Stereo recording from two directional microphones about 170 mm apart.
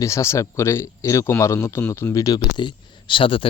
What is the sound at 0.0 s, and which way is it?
Speech, 15° left (ahead or behind).